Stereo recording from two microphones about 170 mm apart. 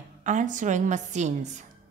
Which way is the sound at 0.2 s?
45° right (ahead or behind).